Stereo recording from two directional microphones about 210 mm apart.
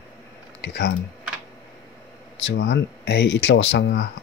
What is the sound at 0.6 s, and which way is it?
Speech, 55° left (ahead or behind).